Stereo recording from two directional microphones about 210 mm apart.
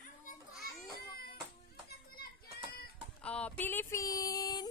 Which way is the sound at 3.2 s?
5° left (ahead or behind).